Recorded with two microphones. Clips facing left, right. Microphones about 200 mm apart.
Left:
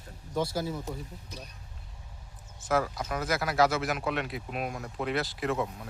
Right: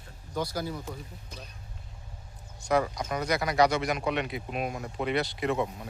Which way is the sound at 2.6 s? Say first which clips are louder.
Right 2 dB; centre (ahead or behind).